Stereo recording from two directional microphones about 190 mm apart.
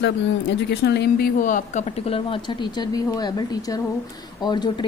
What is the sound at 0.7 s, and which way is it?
A woman's voice, 65° left (ahead or behind).